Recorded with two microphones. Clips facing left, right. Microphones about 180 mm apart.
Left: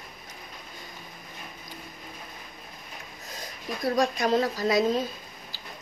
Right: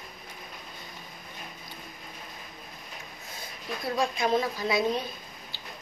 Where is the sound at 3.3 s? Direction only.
40° left (ahead or behind).